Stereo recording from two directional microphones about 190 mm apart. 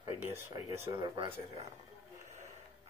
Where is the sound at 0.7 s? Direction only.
35° right (ahead or behind).